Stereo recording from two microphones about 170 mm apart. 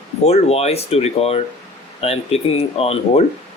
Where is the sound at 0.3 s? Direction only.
40° left (ahead or behind).